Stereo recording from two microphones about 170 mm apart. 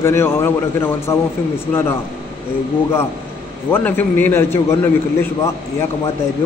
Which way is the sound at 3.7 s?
10° left (ahead or behind).